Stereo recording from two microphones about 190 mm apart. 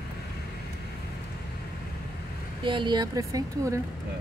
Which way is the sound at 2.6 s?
25° right (ahead or behind).